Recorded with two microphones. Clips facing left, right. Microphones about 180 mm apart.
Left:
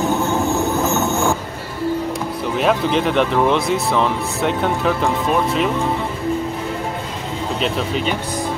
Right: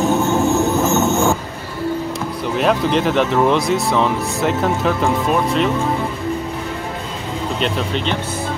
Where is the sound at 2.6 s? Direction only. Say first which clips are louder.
Right 1 dB; centre (ahead or behind).